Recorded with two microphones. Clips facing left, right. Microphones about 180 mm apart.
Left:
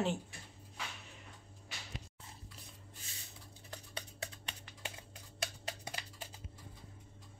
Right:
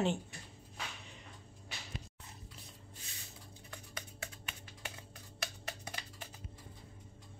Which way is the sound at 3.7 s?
35° left (ahead or behind).